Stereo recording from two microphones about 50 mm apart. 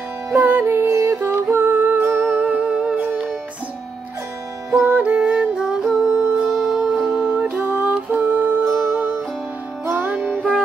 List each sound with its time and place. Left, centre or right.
0.3 s music: right
0.8 s music: right
1.3 s music: right
2.5 s music: right
4.6 s music: right
5.0 s music: right; by 6.8 s centre
7.0 s music: right
7.6 s music: right